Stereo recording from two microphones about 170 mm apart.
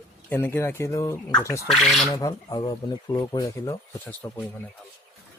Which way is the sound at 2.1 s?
20° left (ahead or behind).